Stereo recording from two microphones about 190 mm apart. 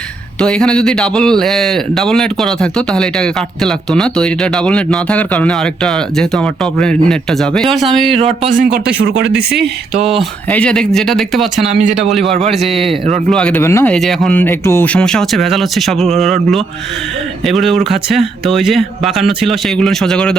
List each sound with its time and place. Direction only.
0.3 s speech: 5° left (ahead or behind)
8.5 s speech: 50° right (ahead or behind)
9.0 s speech: 70° right (ahead or behind)
10.5 s speech: 5° left (ahead or behind)
11.7 s speech: 40° right (ahead or behind)
11.9 s speech: centre (ahead or behind)
13.9 s speech: centre (ahead or behind)